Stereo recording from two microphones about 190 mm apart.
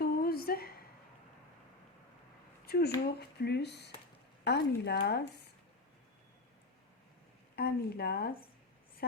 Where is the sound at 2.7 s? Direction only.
55° left (ahead or behind).